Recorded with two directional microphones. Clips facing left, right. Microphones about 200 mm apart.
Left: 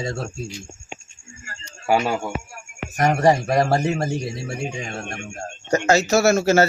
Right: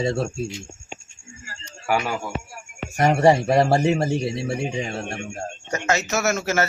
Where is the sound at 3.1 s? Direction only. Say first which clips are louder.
Right 2 dB; 30° right (ahead or behind).